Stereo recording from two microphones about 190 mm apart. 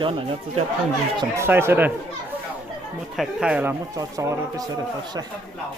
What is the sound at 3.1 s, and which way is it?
Speech, 5° right (ahead or behind).